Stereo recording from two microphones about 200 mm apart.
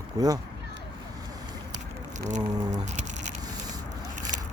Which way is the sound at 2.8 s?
35° right (ahead or behind).